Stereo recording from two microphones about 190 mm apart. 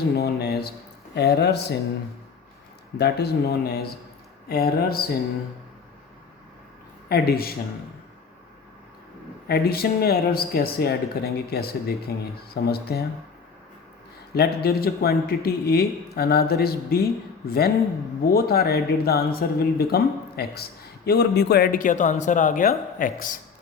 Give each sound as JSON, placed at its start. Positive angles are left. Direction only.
{"t": 0.2, "sound": "speech", "side_deg": 60}
{"t": 3.0, "sound": "speech", "side_deg": 60}
{"t": 7.1, "sound": "speech", "side_deg": 55}
{"t": 9.5, "sound": "speech", "side_deg": 55}
{"t": 14.3, "sound": "speech", "side_deg": 55}